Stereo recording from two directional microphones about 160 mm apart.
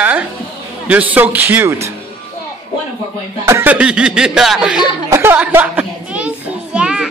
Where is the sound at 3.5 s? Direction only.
10° right (ahead or behind).